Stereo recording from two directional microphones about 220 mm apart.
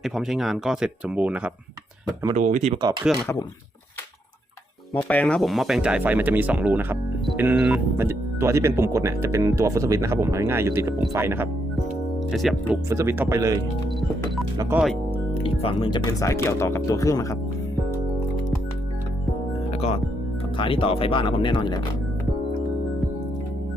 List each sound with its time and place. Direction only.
0.0 s speech: centre (ahead or behind)
2.3 s speech: 30° right (ahead or behind)
3.1 s speech: 5° right (ahead or behind)
5.0 s speech: 5° left (ahead or behind); by 11.4 s 10° right (ahead or behind)
12.3 s speech: centre (ahead or behind)
12.7 s speech: 10° right (ahead or behind)
14.6 s speech: 5° right (ahead or behind)
15.4 s speech: 25° left (ahead or behind)
19.7 s speech: 25° left (ahead or behind)